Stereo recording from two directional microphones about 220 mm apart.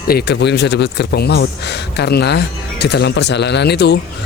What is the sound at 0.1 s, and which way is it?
Speech, 50° left (ahead or behind).